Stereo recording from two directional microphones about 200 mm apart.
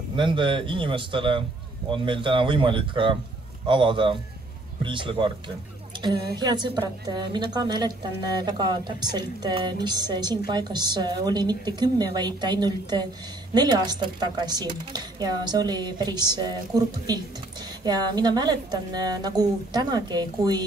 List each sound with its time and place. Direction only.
0.1 s speech: 25° right (ahead or behind)
6.3 s speech: 20° right (ahead or behind)